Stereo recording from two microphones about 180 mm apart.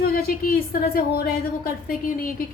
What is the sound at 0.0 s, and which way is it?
A woman's voice, 55° left (ahead or behind).